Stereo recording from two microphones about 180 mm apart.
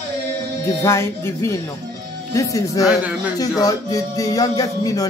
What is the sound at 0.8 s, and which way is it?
Speech, 15° left (ahead or behind).